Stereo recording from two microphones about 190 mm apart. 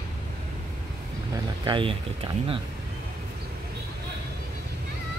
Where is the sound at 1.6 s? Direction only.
25° right (ahead or behind).